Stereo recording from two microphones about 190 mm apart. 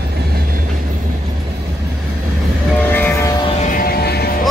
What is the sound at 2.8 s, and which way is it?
Train, 10° left (ahead or behind).